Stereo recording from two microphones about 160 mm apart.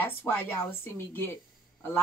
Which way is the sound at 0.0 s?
10° left (ahead or behind).